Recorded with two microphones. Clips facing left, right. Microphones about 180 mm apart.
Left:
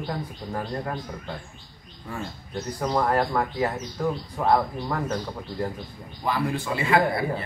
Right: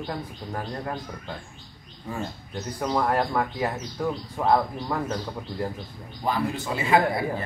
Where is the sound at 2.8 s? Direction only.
Centre (ahead or behind).